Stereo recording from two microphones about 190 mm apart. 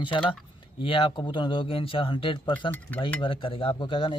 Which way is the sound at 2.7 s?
10° left (ahead or behind).